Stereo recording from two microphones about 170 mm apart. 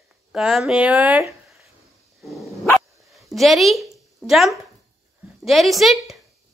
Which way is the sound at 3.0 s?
Centre (ahead or behind).